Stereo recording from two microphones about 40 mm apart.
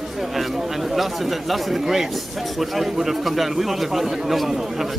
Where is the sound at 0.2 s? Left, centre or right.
Centre.